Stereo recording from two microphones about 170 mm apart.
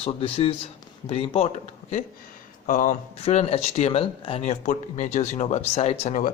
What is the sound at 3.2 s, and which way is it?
Speech, 35° left (ahead or behind).